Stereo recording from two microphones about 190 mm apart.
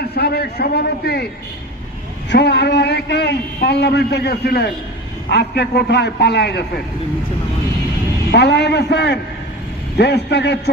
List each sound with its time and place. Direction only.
0.0 s a man's voice: 55° left (ahead or behind)
2.3 s a man's voice: 60° left (ahead or behind)
8.3 s a man's voice: 60° left (ahead or behind)